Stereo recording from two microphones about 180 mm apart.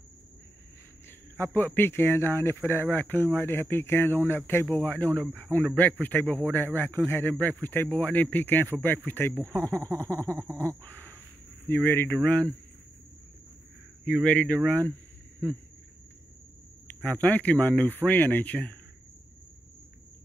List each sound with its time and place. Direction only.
1.3 s speech: 10° left (ahead or behind)
9.5 s speech: 20° right (ahead or behind)
10.8 s speech: 10° left (ahead or behind)
14.0 s speech: 5° left (ahead or behind)
16.8 s speech: 10° left (ahead or behind)